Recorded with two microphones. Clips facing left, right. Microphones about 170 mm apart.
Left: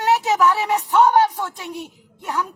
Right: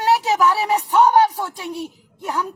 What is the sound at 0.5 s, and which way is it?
Speech, 35° right (ahead or behind).